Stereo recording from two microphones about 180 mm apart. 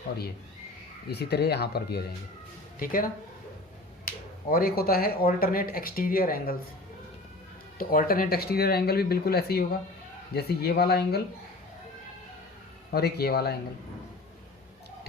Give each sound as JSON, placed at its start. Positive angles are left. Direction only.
{"t": 1.1, "sound": "speech", "side_deg": 65}
{"t": 2.7, "sound": "speech", "side_deg": 50}
{"t": 7.8, "sound": "speech", "side_deg": 55}
{"t": 12.9, "sound": "speech", "side_deg": 60}